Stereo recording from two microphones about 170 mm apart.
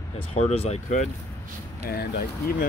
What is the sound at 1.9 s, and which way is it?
Speech, 65° left (ahead or behind).